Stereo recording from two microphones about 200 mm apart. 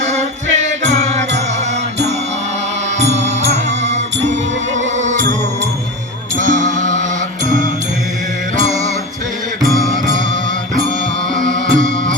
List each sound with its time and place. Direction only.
0.1 s music: 35° right (ahead or behind)
3.0 s music: 35° right (ahead or behind)
6.4 s music: 40° right (ahead or behind)
11.3 s music: 40° right (ahead or behind)